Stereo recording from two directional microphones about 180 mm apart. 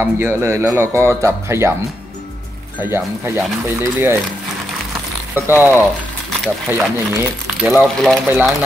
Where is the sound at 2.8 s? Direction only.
15° right (ahead or behind).